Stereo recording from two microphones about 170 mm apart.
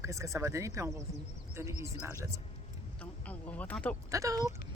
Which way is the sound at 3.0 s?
10° left (ahead or behind).